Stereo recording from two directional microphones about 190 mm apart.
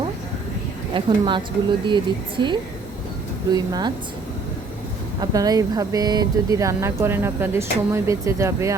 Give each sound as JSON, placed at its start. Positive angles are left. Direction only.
{"t": 0.9, "sound": "speech", "side_deg": -25}
{"t": 5.2, "sound": "speech", "side_deg": -20}